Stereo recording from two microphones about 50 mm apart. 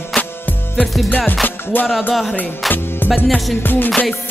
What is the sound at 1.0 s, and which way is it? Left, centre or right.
Music, left.